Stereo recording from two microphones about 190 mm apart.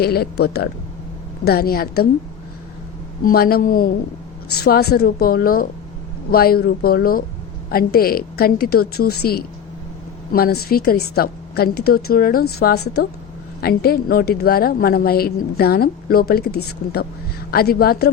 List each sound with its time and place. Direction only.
0.0 s speech: 55° left (ahead or behind)
3.2 s speech: 50° left (ahead or behind)
17.5 s speech: 55° left (ahead or behind)